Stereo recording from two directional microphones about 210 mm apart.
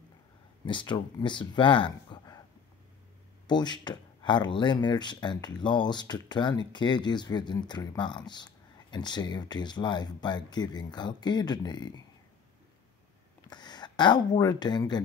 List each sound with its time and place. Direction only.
0.7 s speech: 20° left (ahead or behind)
3.4 s speech: 20° left (ahead or behind)
13.5 s speech: 20° left (ahead or behind)